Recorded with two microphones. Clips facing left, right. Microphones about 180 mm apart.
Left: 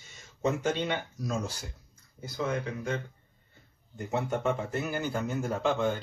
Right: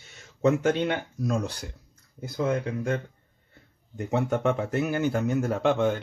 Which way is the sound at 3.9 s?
65° right (ahead or behind).